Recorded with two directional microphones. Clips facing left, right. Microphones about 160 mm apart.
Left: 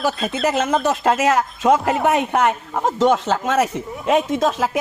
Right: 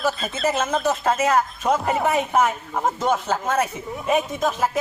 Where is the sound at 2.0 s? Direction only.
75° left (ahead or behind).